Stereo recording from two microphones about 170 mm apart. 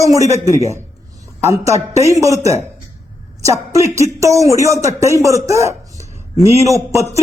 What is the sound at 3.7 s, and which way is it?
A man's voice, 15° right (ahead or behind).